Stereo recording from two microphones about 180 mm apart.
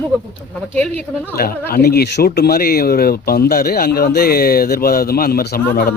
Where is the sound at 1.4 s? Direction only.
55° left (ahead or behind).